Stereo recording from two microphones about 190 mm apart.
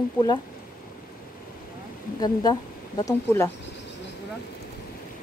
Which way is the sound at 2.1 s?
20° left (ahead or behind).